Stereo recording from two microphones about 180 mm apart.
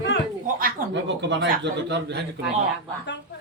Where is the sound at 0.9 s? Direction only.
80° right.